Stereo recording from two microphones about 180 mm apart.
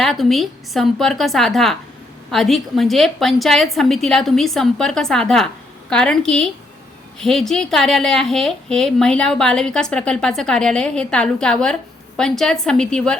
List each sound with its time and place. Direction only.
0.0 s a woman's voice: centre (ahead or behind)